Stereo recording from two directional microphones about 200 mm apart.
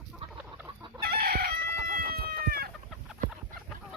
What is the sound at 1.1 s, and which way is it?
Chicken, 50° right (ahead or behind).